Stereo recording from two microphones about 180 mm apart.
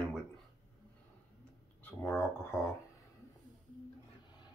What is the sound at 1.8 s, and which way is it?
Speech, 10° left (ahead or behind).